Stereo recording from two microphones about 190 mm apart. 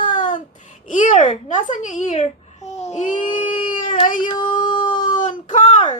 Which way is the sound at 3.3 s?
30° left (ahead or behind).